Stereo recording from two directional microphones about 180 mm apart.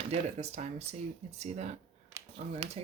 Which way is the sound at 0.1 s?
35° right (ahead or behind).